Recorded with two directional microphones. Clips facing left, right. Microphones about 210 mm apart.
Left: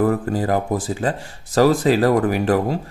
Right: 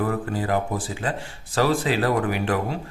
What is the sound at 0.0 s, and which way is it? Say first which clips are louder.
Speech: left 6 dB; 40° left (ahead or behind).